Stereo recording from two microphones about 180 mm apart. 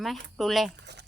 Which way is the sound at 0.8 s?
70° right (ahead or behind).